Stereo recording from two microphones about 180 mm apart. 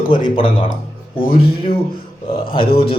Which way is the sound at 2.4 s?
30° left (ahead or behind).